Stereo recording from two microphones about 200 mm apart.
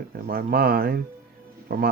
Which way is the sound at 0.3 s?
50° right (ahead or behind).